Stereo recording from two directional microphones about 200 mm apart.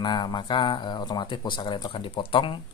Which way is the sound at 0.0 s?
20° left (ahead or behind).